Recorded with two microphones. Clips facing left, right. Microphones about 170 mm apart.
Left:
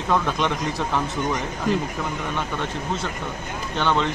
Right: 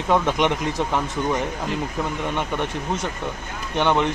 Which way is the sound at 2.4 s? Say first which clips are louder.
Right 2 dB; 20° right (ahead or behind).